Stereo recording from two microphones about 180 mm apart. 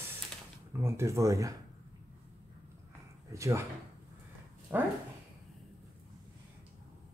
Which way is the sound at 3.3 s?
15° right (ahead or behind).